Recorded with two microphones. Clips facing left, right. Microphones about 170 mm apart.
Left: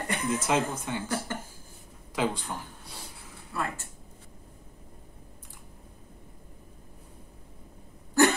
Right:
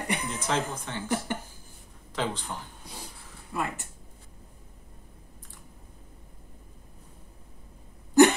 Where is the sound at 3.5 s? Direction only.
20° right (ahead or behind).